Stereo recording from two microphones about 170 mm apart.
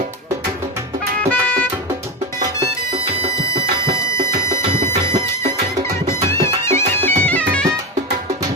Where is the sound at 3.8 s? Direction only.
20° left (ahead or behind).